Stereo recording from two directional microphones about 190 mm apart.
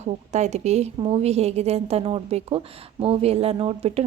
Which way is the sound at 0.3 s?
35° right (ahead or behind).